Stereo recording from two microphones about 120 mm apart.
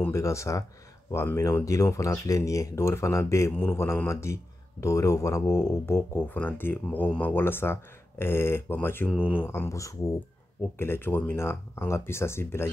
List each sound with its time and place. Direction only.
0.1 s speech: 25° left (ahead or behind)